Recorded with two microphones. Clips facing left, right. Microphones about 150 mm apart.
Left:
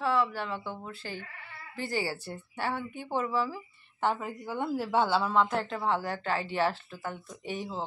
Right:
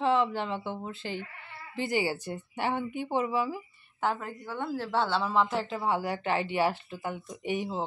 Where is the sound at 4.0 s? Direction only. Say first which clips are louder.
Left 1 dB; 5° left (ahead or behind).